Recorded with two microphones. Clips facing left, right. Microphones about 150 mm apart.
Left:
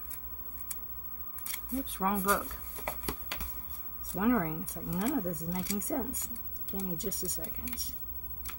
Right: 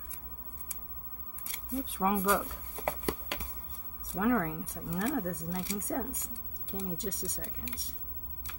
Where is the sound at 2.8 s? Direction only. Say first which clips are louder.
Right 6 dB; 60° right (ahead or behind).